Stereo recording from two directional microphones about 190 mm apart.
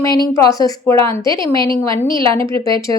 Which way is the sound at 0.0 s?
20° left (ahead or behind).